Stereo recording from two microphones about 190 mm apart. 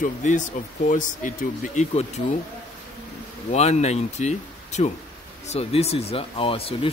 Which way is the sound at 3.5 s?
35° left (ahead or behind).